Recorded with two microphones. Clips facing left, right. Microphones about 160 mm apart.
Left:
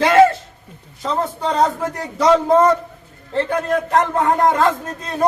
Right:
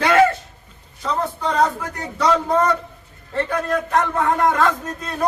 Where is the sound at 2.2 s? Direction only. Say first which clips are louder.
Left 5 dB; 25° left (ahead or behind).